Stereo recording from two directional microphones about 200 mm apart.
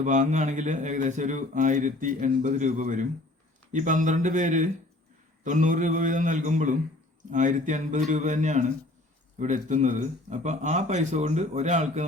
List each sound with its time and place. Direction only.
0.0 s speech: 40° right (ahead or behind)